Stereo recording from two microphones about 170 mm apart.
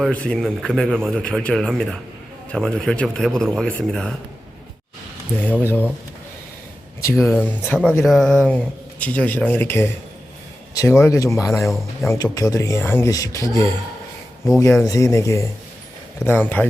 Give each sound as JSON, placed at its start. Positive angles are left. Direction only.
{"t": 0.0, "sound": "a man's voice", "side_deg": 5}
{"t": 5.4, "sound": "speech", "side_deg": 10}
{"t": 7.3, "sound": "speech", "side_deg": 10}
{"t": 8.0, "sound": "speech", "side_deg": 0}